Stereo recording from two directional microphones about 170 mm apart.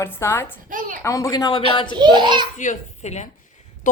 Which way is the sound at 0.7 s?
50° right (ahead or behind).